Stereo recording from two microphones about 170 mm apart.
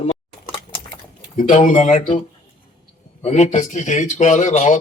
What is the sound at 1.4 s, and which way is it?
Speech, 45° left (ahead or behind).